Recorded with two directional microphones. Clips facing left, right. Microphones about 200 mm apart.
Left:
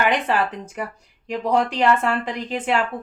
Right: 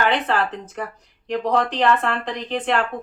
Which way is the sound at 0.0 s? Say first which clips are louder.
Even; 10° left (ahead or behind).